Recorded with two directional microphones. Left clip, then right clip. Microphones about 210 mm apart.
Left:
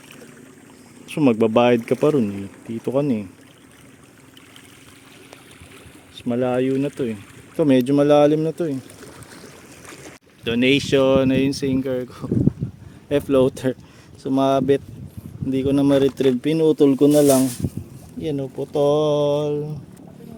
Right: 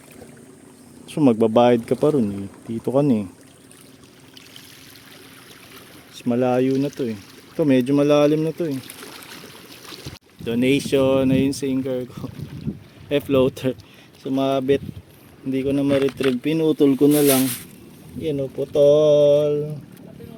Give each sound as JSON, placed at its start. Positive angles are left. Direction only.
{"t": 1.0, "sound": "speech", "side_deg": -5}
{"t": 6.1, "sound": "speech", "side_deg": -15}
{"t": 6.8, "sound": "speech", "side_deg": 0}
{"t": 10.4, "sound": "speech", "side_deg": -5}
{"t": 14.3, "sound": "speech", "side_deg": 15}
{"t": 16.4, "sound": "speech", "side_deg": 5}